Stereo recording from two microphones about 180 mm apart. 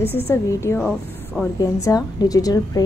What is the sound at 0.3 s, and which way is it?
Speech, 15° left (ahead or behind).